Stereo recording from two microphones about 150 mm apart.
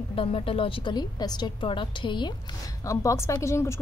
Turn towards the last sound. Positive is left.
turn(degrees=20)  # may be behind; listen again after turning